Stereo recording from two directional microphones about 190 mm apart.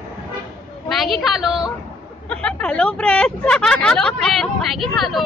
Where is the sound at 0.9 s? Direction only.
Centre (ahead or behind).